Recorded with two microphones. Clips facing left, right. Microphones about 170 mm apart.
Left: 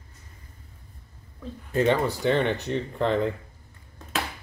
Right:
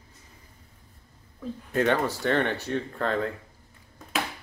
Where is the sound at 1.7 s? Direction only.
10° left (ahead or behind).